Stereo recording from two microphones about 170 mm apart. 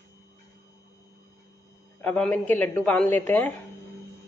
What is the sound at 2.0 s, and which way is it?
A man's voice, 10° left (ahead or behind).